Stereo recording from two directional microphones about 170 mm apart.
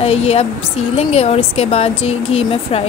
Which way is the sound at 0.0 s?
35° left (ahead or behind).